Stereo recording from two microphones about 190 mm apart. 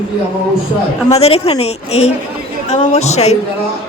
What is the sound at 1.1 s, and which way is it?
A woman's voice, 35° left (ahead or behind).